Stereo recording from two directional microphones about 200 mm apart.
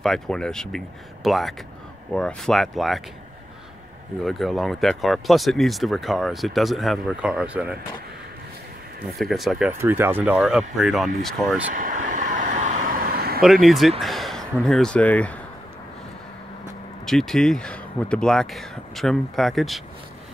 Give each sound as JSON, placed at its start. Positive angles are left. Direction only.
{"t": 0.0, "sound": "speech", "side_deg": 5}
{"t": 4.2, "sound": "speech", "side_deg": 0}
{"t": 9.2, "sound": "speech", "side_deg": 0}
{"t": 11.7, "sound": "vehicle", "side_deg": -40}
{"t": 13.4, "sound": "speech", "side_deg": 0}
{"t": 17.0, "sound": "speech", "side_deg": 0}